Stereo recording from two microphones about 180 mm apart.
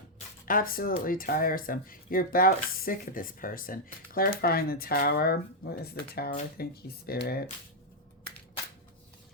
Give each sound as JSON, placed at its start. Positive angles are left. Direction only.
{"t": 0.4, "sound": "speech", "side_deg": 50}